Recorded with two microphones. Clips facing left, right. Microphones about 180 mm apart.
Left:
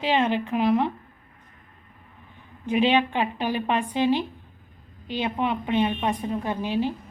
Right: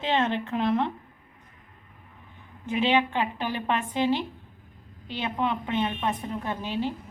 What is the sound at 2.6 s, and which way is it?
A woman's voice, 15° left (ahead or behind).